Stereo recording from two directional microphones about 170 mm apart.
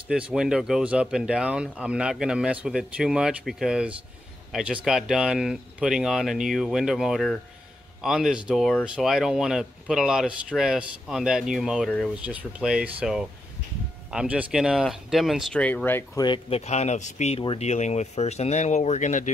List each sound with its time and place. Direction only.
0.1 s speech: 5° right (ahead or behind); by 16.1 s 10° left (ahead or behind)
16.2 s speech: 30° left (ahead or behind); by 19.3 s 45° left (ahead or behind)